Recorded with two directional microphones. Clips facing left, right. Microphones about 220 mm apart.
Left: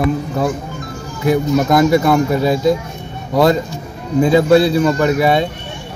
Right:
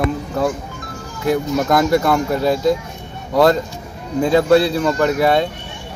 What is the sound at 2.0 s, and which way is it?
Speech, 15° left (ahead or behind).